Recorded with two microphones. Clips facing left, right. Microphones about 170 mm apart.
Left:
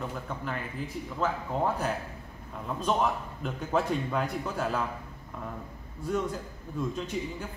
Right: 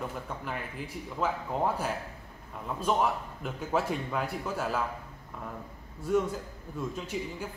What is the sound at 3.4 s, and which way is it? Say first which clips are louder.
Speech: left 2 dB; 5° right (ahead or behind).